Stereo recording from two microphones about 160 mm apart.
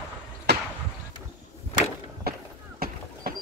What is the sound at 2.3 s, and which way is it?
Run, 75° right (ahead or behind).